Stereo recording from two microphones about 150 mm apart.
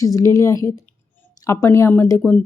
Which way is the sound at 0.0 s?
20° left (ahead or behind).